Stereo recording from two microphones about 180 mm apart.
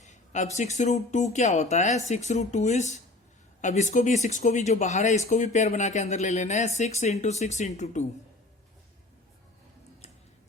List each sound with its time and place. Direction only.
0.0 s speech: 40° left (ahead or behind)